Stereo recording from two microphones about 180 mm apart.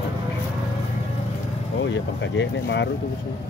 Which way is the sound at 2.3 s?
80° left.